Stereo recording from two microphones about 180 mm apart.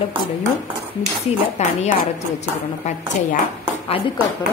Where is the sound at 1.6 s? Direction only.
40° left (ahead or behind).